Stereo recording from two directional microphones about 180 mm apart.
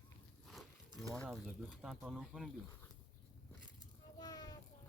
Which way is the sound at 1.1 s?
5° left (ahead or behind).